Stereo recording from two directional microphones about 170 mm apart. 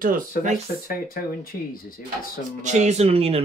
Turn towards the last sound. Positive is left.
turn(degrees=-35)  # may be behind; listen again after turning